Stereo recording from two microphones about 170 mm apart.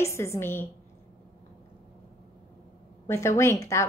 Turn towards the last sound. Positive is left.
turn(degrees=15)  # may be behind; listen again after turning